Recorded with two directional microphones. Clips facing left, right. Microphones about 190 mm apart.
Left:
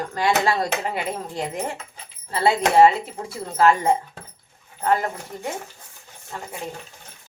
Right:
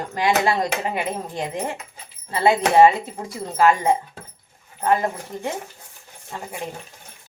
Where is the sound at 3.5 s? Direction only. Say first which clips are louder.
Even; 15° right (ahead or behind).